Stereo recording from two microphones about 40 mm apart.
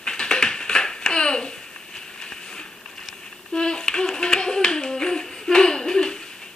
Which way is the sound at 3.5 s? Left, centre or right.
Left.